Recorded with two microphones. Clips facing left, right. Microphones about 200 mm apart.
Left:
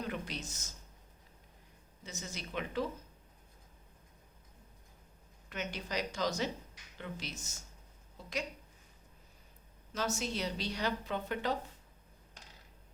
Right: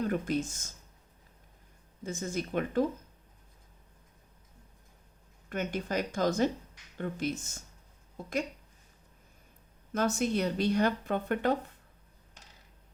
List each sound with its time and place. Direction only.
0.0 s a woman's voice: 50° right (ahead or behind)
2.0 s a woman's voice: 50° right (ahead or behind)
5.5 s a woman's voice: 50° right (ahead or behind)
9.9 s a woman's voice: 55° right (ahead or behind)